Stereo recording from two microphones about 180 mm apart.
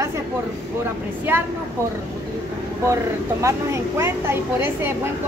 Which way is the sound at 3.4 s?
15° right (ahead or behind).